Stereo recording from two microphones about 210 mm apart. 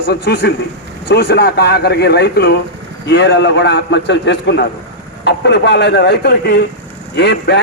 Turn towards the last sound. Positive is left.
turn(degrees=55)  # may be behind; listen again after turning